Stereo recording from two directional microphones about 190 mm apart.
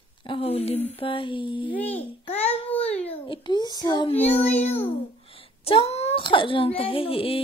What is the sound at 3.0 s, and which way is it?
A child's voice, 30° left (ahead or behind).